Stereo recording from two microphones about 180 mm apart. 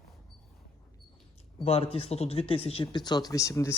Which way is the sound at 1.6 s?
35° left (ahead or behind).